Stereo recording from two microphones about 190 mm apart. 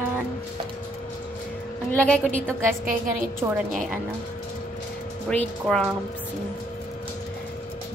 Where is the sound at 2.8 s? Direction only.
45° right (ahead or behind).